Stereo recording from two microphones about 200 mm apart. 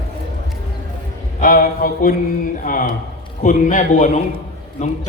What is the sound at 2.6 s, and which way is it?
A man's voice, 40° left (ahead or behind).